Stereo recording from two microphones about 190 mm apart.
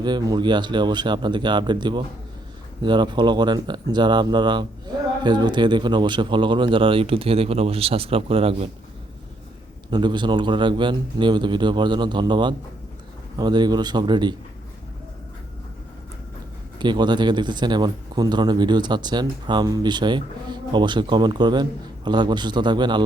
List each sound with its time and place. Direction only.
0.0 s a man's voice: 20° right (ahead or behind)
9.9 s a man's voice: 25° right (ahead or behind)
16.7 s a man's voice: 25° right (ahead or behind)